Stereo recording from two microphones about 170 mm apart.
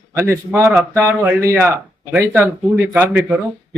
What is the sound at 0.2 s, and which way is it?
A man's voice, 15° right (ahead or behind).